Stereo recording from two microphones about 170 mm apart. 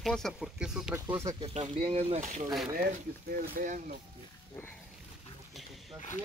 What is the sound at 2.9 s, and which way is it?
Speech, 55° right (ahead or behind).